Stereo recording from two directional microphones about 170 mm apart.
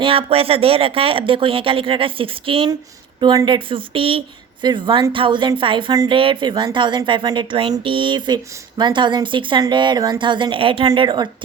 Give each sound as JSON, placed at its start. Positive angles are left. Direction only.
{"t": 0.0, "sound": "a woman's voice", "side_deg": -35}